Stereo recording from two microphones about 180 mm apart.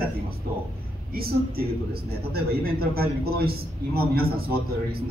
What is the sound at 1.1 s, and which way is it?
A man's voice, 55° right (ahead or behind).